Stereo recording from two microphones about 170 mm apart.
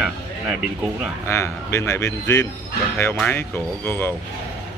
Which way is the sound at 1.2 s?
15° left (ahead or behind).